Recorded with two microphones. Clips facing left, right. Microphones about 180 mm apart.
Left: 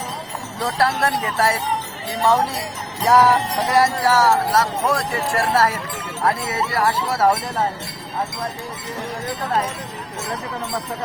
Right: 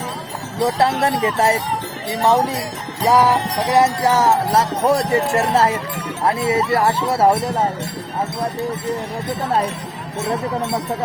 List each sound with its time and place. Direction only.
0.6 s speech: 25° right (ahead or behind)
3.0 s music: 15° right (ahead or behind)
3.8 s speech: 20° right (ahead or behind)